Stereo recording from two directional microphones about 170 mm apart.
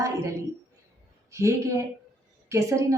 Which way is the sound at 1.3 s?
15° right (ahead or behind).